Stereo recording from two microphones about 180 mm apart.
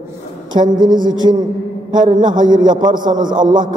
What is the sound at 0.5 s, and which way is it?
A man's voice, 25° right (ahead or behind).